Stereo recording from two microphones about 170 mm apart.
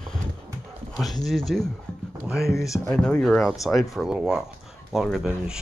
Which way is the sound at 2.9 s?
5° left (ahead or behind).